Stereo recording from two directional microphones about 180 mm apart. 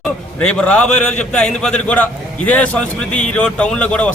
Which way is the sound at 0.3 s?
5° left (ahead or behind).